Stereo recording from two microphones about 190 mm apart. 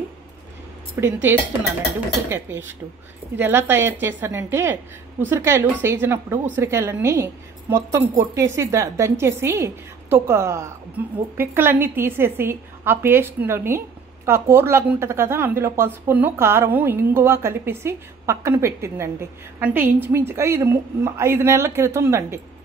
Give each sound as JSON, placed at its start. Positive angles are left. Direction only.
{"t": 1.0, "sound": "a woman's voice", "side_deg": -10}
{"t": 2.2, "sound": "a woman's voice", "side_deg": -15}